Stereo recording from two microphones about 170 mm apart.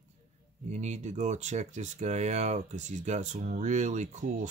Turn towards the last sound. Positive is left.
turn(degrees=-45)  # may be behind; listen again after turning